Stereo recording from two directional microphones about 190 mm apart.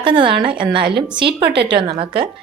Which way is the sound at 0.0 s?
25° right (ahead or behind).